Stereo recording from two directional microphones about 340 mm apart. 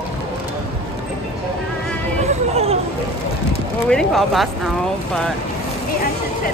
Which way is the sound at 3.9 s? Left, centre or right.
Centre.